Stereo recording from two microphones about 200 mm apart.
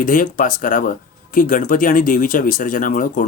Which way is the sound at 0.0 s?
45° left (ahead or behind).